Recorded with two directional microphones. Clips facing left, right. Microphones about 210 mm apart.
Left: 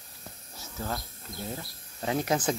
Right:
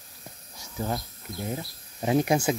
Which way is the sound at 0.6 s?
20° right (ahead or behind).